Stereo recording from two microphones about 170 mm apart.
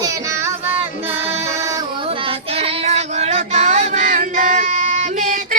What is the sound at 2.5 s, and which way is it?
Child singing, 35° right (ahead or behind).